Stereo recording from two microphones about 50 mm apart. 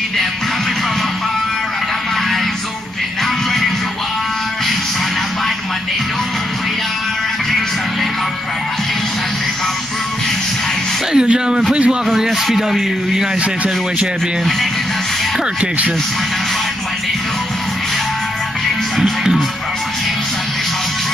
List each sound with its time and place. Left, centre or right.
11.1 s a man's voice: centre
12.2 s speech: centre